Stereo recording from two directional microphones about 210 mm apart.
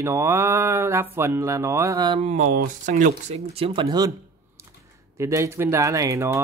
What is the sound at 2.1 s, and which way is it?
Speech, 35° right (ahead or behind).